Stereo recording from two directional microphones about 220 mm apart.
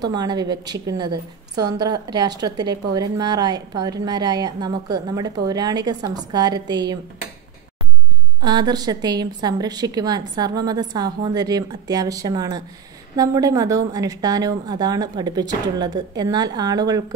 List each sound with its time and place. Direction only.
0.0 s a woman's voice: 20° right (ahead or behind)
8.4 s a woman's voice: 20° right (ahead or behind)